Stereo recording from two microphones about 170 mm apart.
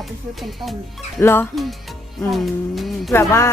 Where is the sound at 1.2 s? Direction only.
15° left (ahead or behind).